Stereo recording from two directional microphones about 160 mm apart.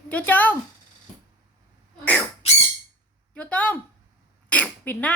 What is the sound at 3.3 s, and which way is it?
Speech, 10° left (ahead or behind).